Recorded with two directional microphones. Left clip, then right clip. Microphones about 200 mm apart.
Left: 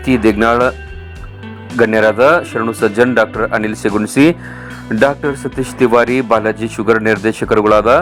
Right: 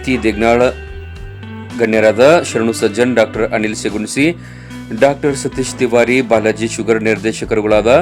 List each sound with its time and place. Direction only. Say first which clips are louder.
0.0 s speech: left 2 dB; 10° left (ahead or behind)